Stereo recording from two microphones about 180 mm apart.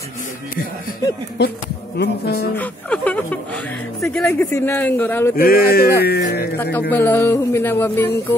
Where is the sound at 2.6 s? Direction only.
5° left (ahead or behind).